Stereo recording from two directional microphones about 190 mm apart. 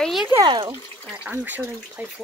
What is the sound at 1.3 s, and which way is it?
Speech, 10° right (ahead or behind).